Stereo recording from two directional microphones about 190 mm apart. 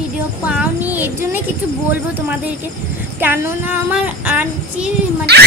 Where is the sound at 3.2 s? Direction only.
10° right (ahead or behind).